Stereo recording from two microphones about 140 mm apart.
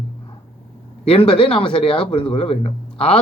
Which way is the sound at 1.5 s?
40° left (ahead or behind).